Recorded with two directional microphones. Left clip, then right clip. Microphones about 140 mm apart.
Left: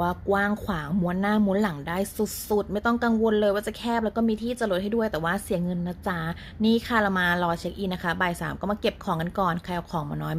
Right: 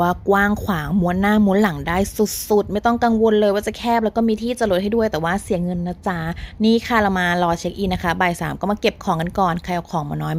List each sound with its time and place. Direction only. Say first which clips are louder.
0.0 s speech: right 8 dB; 45° right (ahead or behind)